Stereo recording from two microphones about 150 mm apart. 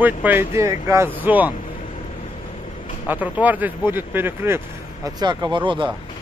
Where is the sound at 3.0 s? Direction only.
10° right (ahead or behind).